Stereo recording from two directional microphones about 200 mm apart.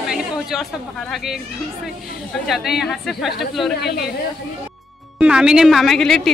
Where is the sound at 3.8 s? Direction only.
55° left (ahead or behind).